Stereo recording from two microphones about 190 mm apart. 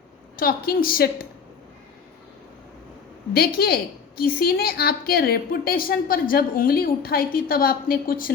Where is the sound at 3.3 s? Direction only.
55° left (ahead or behind).